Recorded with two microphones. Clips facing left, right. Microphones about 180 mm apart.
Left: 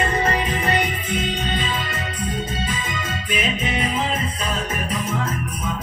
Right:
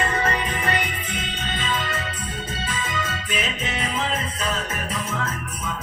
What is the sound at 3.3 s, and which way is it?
Music, 10° left (ahead or behind).